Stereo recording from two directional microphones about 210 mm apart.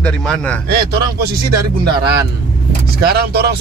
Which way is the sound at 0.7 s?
50° right (ahead or behind).